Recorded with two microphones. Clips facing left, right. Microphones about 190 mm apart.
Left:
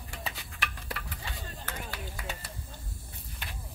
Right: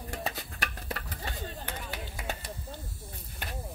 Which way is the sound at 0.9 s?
45° right (ahead or behind).